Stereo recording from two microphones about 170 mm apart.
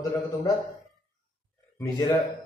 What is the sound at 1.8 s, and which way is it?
Speech, 25° left (ahead or behind).